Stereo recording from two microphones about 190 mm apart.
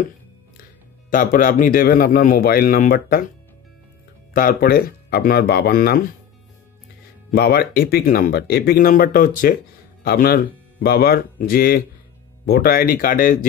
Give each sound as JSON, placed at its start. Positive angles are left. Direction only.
{"t": 1.1, "sound": "speech", "side_deg": 45}
{"t": 4.3, "sound": "speech", "side_deg": 50}
{"t": 7.2, "sound": "speech", "side_deg": 55}